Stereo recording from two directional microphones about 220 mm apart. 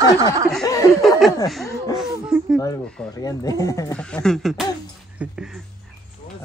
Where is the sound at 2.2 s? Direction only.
5° right (ahead or behind).